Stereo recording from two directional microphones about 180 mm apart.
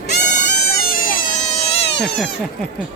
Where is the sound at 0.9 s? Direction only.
50° left (ahead or behind).